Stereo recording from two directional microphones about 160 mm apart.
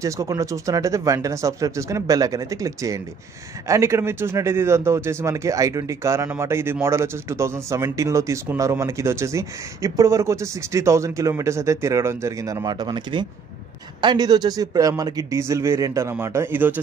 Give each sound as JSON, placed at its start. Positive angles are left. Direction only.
{"t": 0.0, "sound": "speech", "side_deg": -20}